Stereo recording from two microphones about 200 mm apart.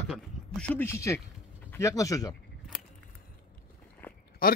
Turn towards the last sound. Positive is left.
turn(degrees=45)  # may be behind; listen again after turning